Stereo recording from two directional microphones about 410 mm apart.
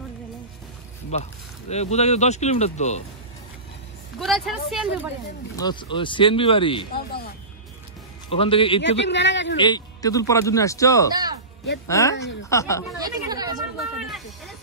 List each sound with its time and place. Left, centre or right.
1.1 s speech: centre
4.2 s a woman's voice: centre
5.6 s speech: centre
9.0 s a man's voice: left
9.6 s speech: centre
11.1 s speech: centre
11.9 s speech: centre
13.0 s speech: centre
13.9 s a sound: centre